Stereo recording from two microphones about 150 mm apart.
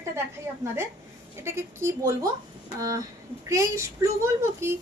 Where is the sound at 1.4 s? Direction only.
15° right (ahead or behind).